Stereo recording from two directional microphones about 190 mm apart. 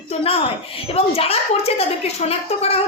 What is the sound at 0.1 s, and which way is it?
A woman's voice, 30° left (ahead or behind).